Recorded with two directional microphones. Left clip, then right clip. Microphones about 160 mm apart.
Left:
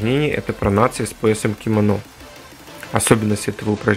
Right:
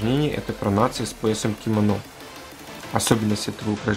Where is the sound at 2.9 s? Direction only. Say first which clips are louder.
Left 5 dB; 20° left (ahead or behind).